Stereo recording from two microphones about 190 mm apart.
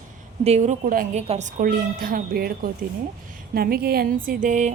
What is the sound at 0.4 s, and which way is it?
Speech, 35° right (ahead or behind).